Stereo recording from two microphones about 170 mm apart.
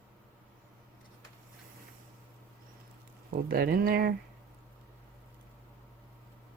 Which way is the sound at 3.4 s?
60° right (ahead or behind).